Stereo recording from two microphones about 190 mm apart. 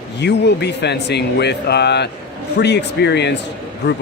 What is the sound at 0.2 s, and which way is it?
Speech, 65° left (ahead or behind).